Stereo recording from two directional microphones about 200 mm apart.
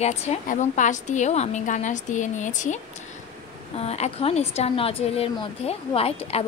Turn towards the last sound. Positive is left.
turn(degrees=30)  # may be behind; listen again after turning